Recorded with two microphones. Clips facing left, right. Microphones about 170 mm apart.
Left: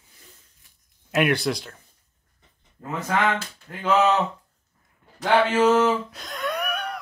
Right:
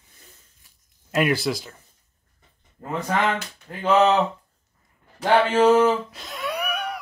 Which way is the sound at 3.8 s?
25° right (ahead or behind).